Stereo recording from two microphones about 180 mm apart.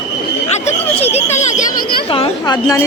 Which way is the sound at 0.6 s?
35° left (ahead or behind).